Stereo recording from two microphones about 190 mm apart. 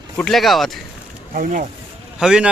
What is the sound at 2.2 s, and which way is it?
Speech, 5° right (ahead or behind).